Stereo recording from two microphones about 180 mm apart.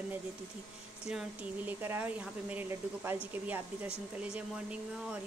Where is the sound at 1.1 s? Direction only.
5° right (ahead or behind).